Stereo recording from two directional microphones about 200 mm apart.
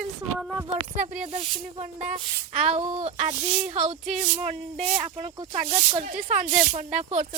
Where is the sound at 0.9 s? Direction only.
40° right (ahead or behind).